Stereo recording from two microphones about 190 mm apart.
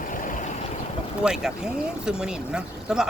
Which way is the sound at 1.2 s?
5° right (ahead or behind).